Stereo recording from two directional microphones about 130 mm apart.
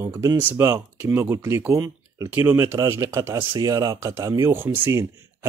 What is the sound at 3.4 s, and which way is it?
Speech, 40° right (ahead or behind).